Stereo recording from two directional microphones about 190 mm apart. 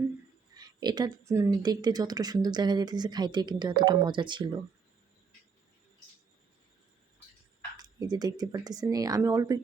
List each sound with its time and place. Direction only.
0.5 s speech: 20° right (ahead or behind)
7.8 s speech: 20° right (ahead or behind)